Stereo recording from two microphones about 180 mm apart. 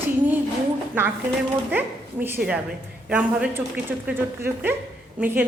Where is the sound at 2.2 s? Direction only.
10° right (ahead or behind).